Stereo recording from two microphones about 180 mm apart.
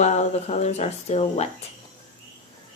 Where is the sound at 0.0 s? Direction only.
40° left (ahead or behind).